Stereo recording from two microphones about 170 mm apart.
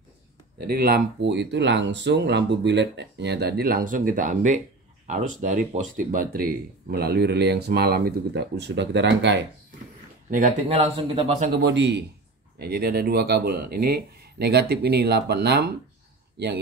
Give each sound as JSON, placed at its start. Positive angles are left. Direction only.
{"t": 0.7, "sound": "speech", "side_deg": -65}
{"t": 10.7, "sound": "a man's voice", "side_deg": -30}
{"t": 11.5, "sound": "speech", "side_deg": -90}
{"t": 12.5, "sound": "speech", "side_deg": -70}